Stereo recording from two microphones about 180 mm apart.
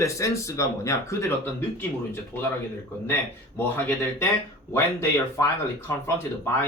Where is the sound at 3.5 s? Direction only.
10° left (ahead or behind).